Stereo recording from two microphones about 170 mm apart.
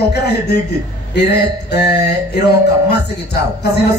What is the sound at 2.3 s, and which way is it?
A woman's voice, 70° left (ahead or behind).